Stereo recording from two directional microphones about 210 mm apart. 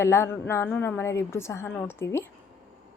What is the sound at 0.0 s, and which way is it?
A woman's voice, 10° left (ahead or behind).